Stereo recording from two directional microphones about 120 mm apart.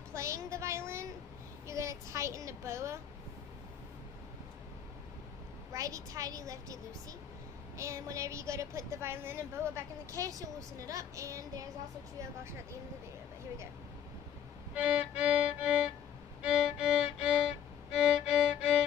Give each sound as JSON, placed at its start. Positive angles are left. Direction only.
{"t": 0.1, "sound": "a sound", "side_deg": -25}
{"t": 1.7, "sound": "a woman's voice", "side_deg": -25}
{"t": 5.7, "sound": "a woman's voice", "side_deg": -30}
{"t": 14.8, "sound": "music", "side_deg": -10}